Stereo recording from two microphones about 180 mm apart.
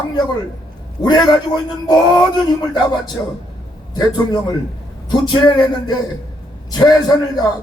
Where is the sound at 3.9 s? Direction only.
25° left (ahead or behind).